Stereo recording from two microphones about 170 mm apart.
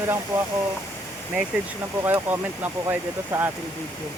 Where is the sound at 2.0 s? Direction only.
10° right (ahead or behind).